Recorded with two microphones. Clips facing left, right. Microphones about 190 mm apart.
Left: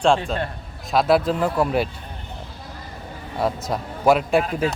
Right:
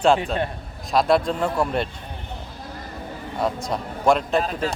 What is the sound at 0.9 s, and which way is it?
Speech, 5° left (ahead or behind).